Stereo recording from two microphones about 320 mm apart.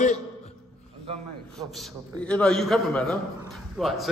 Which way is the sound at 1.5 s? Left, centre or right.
Centre.